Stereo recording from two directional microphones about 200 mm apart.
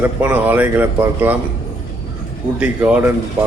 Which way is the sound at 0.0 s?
10° right (ahead or behind).